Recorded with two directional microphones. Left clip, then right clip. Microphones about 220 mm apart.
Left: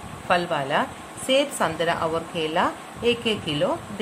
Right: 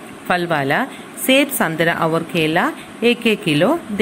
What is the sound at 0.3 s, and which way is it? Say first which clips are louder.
A woman's voice: right 5 dB; 15° right (ahead or behind).